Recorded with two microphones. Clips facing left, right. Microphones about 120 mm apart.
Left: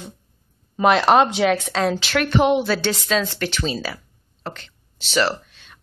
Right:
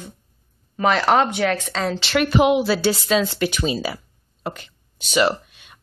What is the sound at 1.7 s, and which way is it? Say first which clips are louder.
A woman's voice: left 1 dB; 5° left (ahead or behind).